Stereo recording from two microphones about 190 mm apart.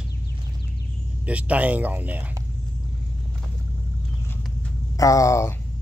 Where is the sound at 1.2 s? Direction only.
5° right (ahead or behind).